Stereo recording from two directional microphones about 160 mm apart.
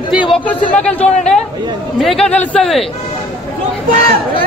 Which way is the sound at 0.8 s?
5° left (ahead or behind).